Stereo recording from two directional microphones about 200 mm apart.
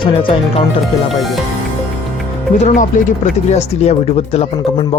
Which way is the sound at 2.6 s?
40° left (ahead or behind).